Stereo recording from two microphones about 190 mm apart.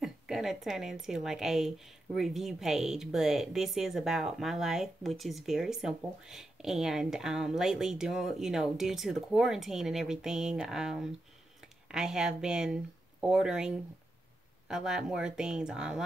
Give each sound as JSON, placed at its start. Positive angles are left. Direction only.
{"t": 0.0, "sound": "a woman's voice", "side_deg": 0}